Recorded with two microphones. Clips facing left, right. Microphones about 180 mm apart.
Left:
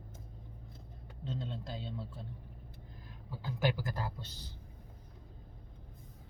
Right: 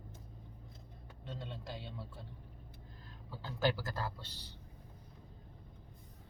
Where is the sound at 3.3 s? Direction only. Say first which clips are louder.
Even; 15° left (ahead or behind).